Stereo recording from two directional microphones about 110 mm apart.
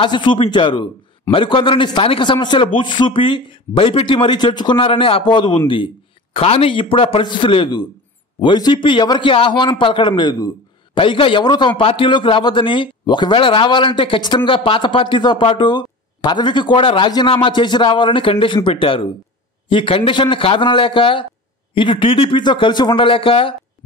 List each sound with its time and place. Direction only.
0.0 s a man's voice: 45° left (ahead or behind)
6.3 s a man's voice: 60° left (ahead or behind)